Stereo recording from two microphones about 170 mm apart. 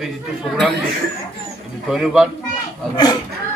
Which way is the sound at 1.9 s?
Centre (ahead or behind).